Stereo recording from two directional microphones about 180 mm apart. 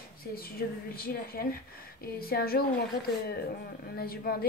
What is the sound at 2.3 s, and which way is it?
Speech, 60° left (ahead or behind).